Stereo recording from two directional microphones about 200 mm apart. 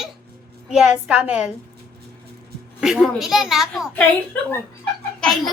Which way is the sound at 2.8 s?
Centre (ahead or behind).